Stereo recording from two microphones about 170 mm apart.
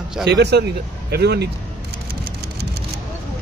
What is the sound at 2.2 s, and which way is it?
Vehicle, 75° right (ahead or behind).